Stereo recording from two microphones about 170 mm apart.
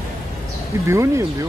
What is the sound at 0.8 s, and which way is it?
Speech, 15° right (ahead or behind).